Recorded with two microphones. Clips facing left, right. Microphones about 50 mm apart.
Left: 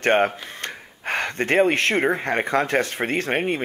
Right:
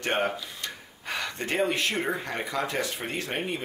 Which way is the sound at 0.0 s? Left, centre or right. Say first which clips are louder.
Left 8 dB; left.